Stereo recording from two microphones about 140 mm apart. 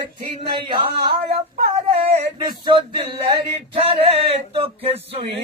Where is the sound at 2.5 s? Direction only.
35° right (ahead or behind).